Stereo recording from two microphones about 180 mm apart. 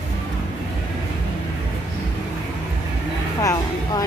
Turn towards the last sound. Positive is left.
turn(degrees=20)  # may be behind; listen again after turning